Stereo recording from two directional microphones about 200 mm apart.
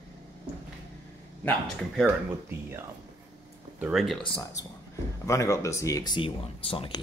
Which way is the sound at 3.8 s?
Centre (ahead or behind).